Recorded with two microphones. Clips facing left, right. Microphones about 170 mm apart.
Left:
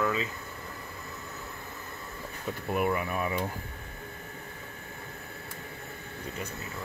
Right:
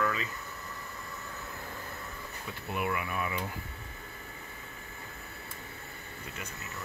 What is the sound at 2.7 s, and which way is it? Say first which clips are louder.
Speech: left 5 dB; 45° left (ahead or behind).